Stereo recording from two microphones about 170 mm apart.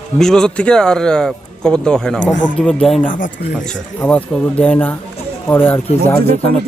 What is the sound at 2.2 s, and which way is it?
Speech, 50° left (ahead or behind).